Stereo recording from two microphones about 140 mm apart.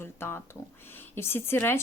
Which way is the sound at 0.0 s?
15° left (ahead or behind).